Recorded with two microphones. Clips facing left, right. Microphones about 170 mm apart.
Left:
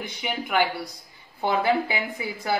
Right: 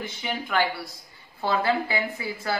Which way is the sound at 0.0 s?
15° left (ahead or behind).